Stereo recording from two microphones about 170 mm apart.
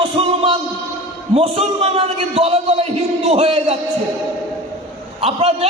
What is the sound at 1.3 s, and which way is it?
A man's voice, 35° right (ahead or behind).